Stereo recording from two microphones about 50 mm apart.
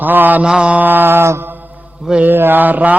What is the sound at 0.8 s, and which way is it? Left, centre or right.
Speech, right.